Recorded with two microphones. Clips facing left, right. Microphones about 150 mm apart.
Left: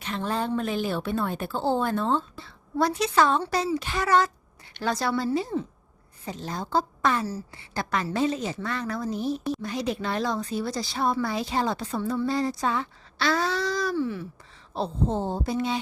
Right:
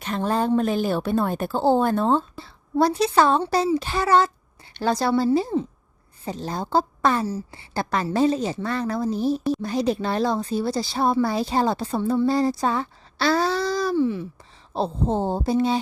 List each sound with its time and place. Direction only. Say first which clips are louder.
0.0 s speech: right 5 dB; 45° right (ahead or behind)
7.3 s a woman's voice: right 4 dB; 20° right (ahead or behind)
7.7 s speech: right 4 dB; 35° right (ahead or behind)
13.9 s a woman's voice: right 6 dB; 20° right (ahead or behind)
14.7 s speech: right 3 dB; 30° right (ahead or behind)